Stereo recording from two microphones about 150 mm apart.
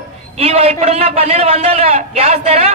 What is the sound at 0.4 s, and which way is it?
A man's voice, 40° right (ahead or behind).